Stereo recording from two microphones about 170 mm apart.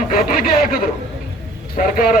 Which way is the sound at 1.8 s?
55° left (ahead or behind).